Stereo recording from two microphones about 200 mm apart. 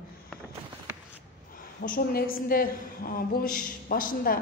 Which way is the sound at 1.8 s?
45° left (ahead or behind).